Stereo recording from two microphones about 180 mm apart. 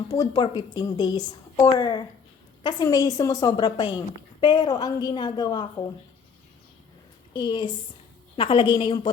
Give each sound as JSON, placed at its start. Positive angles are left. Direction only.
{"t": 0.1, "sound": "a woman's voice", "side_deg": 20}
{"t": 7.3, "sound": "a woman's voice", "side_deg": 25}